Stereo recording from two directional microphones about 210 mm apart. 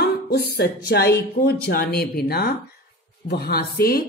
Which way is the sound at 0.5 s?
50° left (ahead or behind).